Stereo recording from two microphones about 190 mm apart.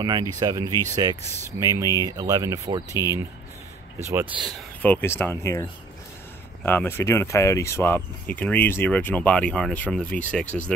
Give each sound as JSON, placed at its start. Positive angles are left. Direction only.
{"t": 0.0, "sound": "speech", "side_deg": -20}
{"t": 4.0, "sound": "speech", "side_deg": -15}
{"t": 4.8, "sound": "speech", "side_deg": 10}